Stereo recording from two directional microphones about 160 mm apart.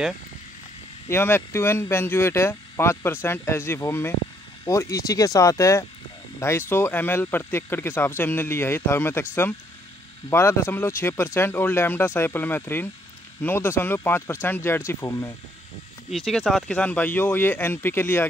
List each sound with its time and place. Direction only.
1.0 s speech: 15° left (ahead or behind)
16.1 s speech: centre (ahead or behind)